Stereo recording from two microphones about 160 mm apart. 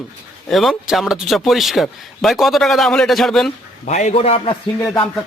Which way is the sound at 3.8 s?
45° left (ahead or behind).